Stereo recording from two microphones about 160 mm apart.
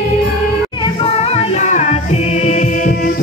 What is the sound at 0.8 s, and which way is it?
Music, 35° left (ahead or behind).